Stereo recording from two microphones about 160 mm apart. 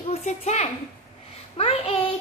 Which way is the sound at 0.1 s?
40° left (ahead or behind).